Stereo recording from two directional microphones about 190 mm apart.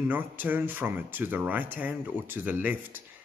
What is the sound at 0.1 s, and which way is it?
Speech, 10° right (ahead or behind).